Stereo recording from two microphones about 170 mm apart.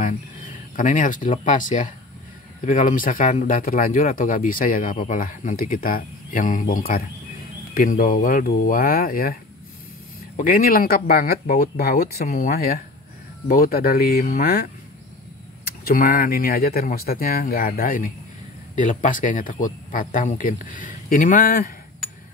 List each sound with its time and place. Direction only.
0.7 s speech: 50° left (ahead or behind)
15.8 s speech: 60° left (ahead or behind)